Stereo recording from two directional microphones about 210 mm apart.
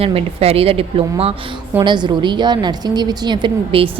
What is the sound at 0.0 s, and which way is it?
A woman's voice, 30° right (ahead or behind).